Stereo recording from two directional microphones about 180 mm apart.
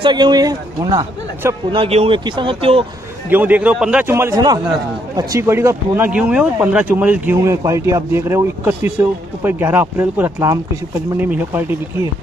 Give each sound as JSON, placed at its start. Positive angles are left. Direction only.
{"t": 0.0, "sound": "speech", "side_deg": -25}
{"t": 1.8, "sound": "speech", "side_deg": -30}
{"t": 3.3, "sound": "a man's voice", "side_deg": -10}